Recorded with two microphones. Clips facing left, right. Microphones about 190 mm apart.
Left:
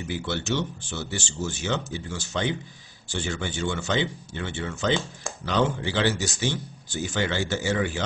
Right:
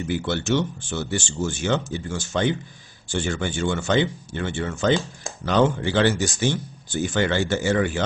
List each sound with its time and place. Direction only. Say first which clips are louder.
0.1 s speech: right 5 dB; 50° right (ahead or behind)